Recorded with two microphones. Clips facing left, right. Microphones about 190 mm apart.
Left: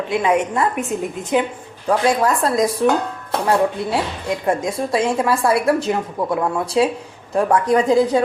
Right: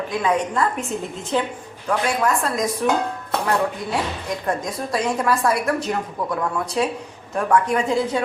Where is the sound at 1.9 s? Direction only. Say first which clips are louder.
Left 4 dB; 35° left (ahead or behind).